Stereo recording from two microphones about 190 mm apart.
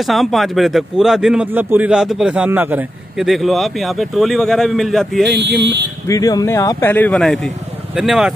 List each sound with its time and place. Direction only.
0.0 s speech: centre (ahead or behind)
6.0 s speech: 20° left (ahead or behind); by 8.3 s centre (ahead or behind)